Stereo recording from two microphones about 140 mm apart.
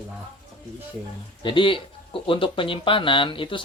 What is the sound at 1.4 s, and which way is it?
Speech, 35° left (ahead or behind).